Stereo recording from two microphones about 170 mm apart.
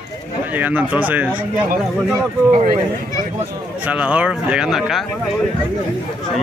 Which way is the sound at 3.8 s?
10° right (ahead or behind).